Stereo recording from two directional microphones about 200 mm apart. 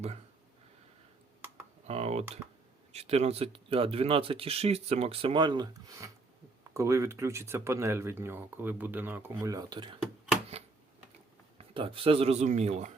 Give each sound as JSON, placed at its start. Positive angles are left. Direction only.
{"t": 1.9, "sound": "speech", "side_deg": -30}
{"t": 11.5, "sound": "speech", "side_deg": -25}